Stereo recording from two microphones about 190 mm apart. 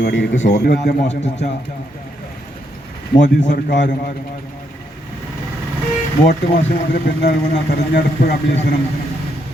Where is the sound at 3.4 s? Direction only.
60° left (ahead or behind).